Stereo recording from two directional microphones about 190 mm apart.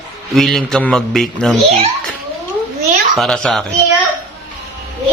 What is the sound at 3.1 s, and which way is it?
Speech, 5° left (ahead or behind).